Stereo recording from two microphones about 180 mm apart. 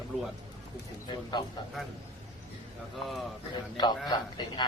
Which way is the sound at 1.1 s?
25° left (ahead or behind).